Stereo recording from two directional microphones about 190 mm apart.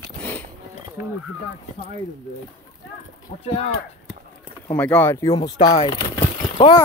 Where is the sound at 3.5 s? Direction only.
30° left (ahead or behind).